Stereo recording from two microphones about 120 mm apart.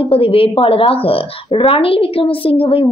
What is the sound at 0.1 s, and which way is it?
A woman's voice, 50° left (ahead or behind).